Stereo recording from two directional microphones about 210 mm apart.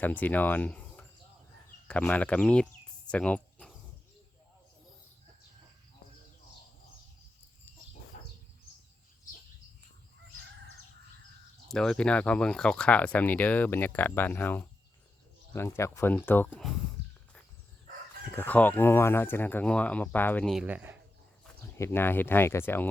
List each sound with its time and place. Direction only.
0.0 s speech: 10° left (ahead or behind)
3.1 s a sound: 5° left (ahead or behind)
8.1 s bird: 35° left (ahead or behind)
11.7 s speech: 5° left (ahead or behind)
17.0 s walk: 55° right (ahead or behind)
18.3 s speech: 10° left (ahead or behind); by 21.0 s 10° right (ahead or behind)
21.8 s speech: 10° left (ahead or behind)